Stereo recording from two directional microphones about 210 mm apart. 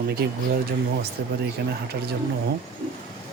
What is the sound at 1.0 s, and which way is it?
Speech, 50° right (ahead or behind).